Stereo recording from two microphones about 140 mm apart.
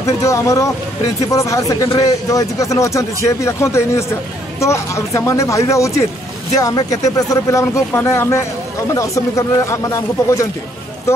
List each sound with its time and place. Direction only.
0.0 s speech: 20° left (ahead or behind)